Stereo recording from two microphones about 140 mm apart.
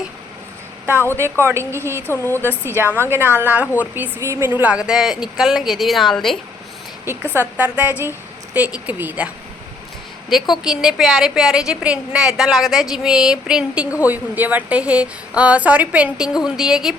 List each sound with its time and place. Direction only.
1.5 s a woman's voice: 20° right (ahead or behind)
2.0 s speech: 15° left (ahead or behind)
2.6 s a woman's voice: 15° right (ahead or behind); by 6.4 s centre (ahead or behind)
7.0 s a woman's voice: 15° right (ahead or behind)
10.5 s a woman's voice: 5° right (ahead or behind)